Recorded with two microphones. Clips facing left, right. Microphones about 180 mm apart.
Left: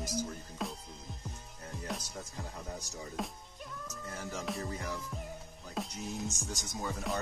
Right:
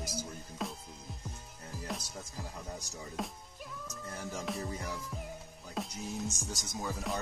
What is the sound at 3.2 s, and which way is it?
Speech, centre (ahead or behind).